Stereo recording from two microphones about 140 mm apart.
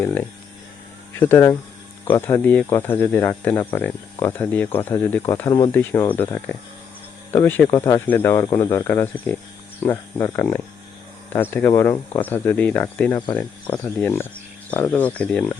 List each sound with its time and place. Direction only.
0.0 s speech: 15° left (ahead or behind)
5.5 s speech: 30° left (ahead or behind)
5.7 s speech: 15° left (ahead or behind)